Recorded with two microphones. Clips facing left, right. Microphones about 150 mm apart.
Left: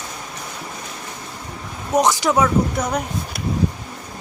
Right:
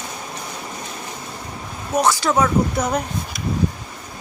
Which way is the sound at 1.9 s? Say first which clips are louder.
Left 1 dB; 20° left (ahead or behind).